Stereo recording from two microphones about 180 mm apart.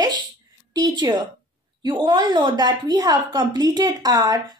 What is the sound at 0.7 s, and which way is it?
A woman's voice, 20° right (ahead or behind).